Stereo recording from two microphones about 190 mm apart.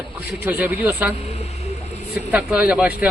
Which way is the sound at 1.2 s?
35° left (ahead or behind).